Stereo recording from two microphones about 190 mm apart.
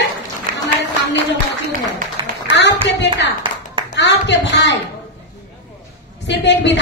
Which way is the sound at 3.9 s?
65° left (ahead or behind).